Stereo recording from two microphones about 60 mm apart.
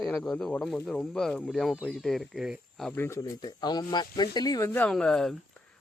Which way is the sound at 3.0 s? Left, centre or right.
Left.